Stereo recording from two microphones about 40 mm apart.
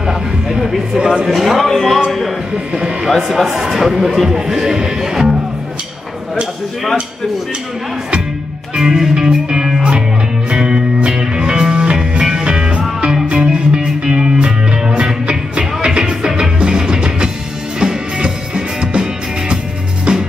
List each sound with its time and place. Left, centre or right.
0.0 s music: centre
1.3 s speech: centre
2.7 s speech: right
3.2 s speech: centre
8.7 s music: centre
20.1 s music: right